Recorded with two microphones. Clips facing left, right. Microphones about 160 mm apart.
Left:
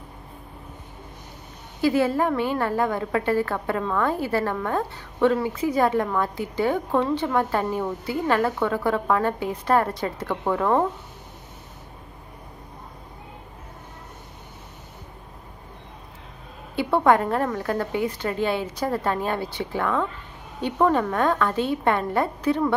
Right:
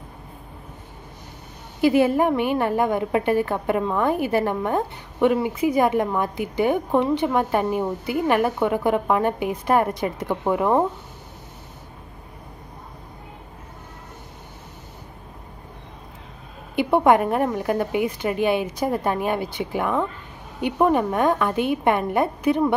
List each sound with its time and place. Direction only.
1.8 s a woman's voice: 20° right (ahead or behind)
16.7 s a woman's voice: 15° right (ahead or behind)